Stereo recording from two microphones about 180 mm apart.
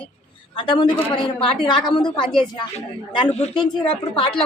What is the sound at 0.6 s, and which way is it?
A woman's voice, 25° left (ahead or behind).